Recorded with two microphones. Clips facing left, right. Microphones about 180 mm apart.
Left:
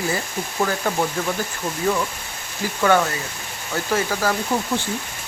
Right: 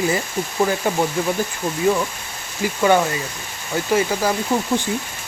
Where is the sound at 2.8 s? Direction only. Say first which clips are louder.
Right 1 dB; 15° right (ahead or behind).